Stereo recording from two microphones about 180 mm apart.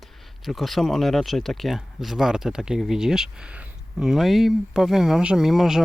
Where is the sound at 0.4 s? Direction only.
Centre (ahead or behind).